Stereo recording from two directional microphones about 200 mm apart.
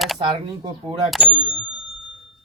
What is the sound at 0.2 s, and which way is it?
Speech, 20° right (ahead or behind).